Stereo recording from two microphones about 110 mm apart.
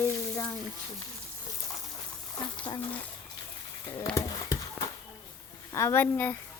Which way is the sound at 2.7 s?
40° left (ahead or behind).